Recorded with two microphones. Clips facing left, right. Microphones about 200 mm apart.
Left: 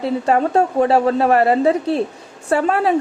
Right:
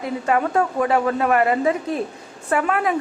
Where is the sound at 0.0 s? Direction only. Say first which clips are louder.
Left 4 dB; 30° left (ahead or behind).